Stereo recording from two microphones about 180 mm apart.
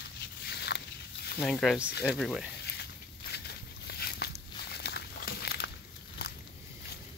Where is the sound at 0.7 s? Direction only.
85° left.